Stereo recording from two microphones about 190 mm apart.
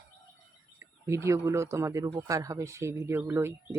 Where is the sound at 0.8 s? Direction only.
15° right (ahead or behind).